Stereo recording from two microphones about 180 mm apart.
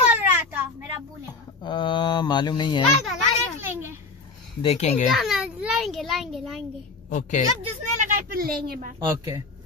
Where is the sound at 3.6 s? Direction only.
10° right (ahead or behind).